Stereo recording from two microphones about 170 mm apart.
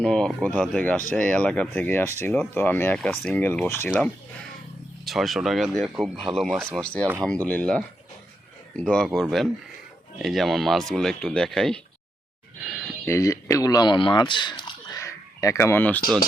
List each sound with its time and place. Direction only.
0.0 s speech: 5° left (ahead or behind)
13.1 s speech: 20° left (ahead or behind)
15.0 s a sound: 20° left (ahead or behind)